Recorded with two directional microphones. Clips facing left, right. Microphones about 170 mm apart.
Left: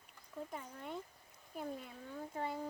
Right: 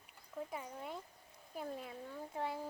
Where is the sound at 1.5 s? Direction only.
Centre (ahead or behind).